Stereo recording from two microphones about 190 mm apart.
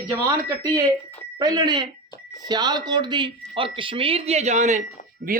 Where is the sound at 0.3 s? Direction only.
15° right (ahead or behind); by 4.8 s 40° right (ahead or behind).